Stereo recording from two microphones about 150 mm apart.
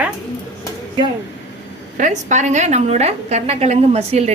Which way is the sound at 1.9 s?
55° right (ahead or behind).